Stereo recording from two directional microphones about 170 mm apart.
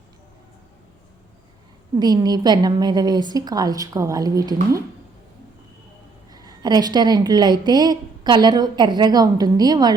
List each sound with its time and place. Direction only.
2.0 s a woman's voice: 25° right (ahead or behind)
6.3 s a woman's voice: 20° right (ahead or behind)